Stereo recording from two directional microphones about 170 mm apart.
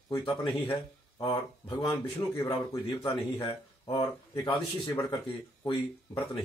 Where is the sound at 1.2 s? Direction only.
30° left (ahead or behind).